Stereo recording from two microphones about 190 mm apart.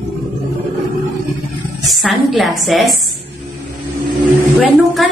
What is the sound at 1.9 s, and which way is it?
A woman's voice, centre (ahead or behind).